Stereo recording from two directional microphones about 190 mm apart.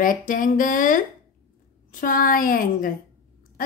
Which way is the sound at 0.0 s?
45° left (ahead or behind).